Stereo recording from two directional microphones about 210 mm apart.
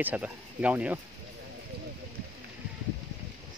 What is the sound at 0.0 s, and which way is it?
Speech, 5° right (ahead or behind).